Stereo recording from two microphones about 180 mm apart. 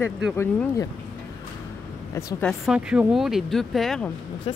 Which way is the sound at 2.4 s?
5° left (ahead or behind).